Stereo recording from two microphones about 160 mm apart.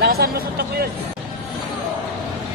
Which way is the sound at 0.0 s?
75° right (ahead or behind).